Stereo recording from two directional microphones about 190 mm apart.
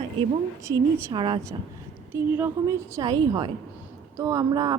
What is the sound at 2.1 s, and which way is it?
A woman's voice, 10° right (ahead or behind).